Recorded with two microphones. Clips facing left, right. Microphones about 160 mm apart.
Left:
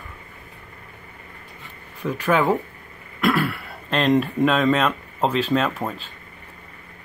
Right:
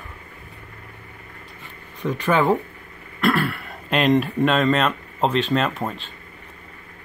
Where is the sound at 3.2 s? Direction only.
10° left (ahead or behind).